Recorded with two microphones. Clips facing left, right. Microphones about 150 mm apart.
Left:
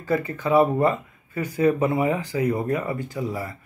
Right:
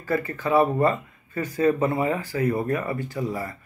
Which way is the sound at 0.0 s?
15° left (ahead or behind).